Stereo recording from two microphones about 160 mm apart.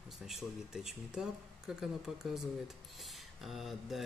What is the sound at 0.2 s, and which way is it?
Speech, centre (ahead or behind).